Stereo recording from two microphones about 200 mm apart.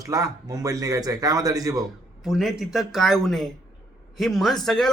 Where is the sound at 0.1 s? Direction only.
15° right (ahead or behind).